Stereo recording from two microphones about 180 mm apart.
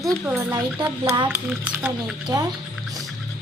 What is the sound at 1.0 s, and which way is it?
Speech, 25° right (ahead or behind).